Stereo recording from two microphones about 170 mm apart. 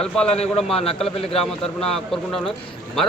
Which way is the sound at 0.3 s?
35° left (ahead or behind).